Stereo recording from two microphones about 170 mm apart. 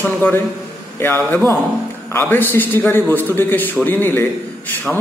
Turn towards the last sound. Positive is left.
turn(degrees=10)  # may be behind; listen again after turning